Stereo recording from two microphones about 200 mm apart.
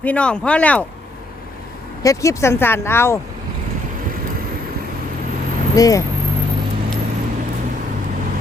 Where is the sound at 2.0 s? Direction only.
15° left (ahead or behind).